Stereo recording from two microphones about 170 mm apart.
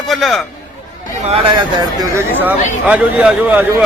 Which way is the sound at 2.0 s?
15° right (ahead or behind).